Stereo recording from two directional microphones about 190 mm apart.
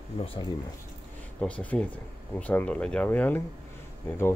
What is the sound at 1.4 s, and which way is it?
Speech, 5° left (ahead or behind).